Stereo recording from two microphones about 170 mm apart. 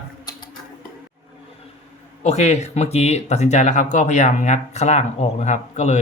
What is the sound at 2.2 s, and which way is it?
Speech, 40° left (ahead or behind).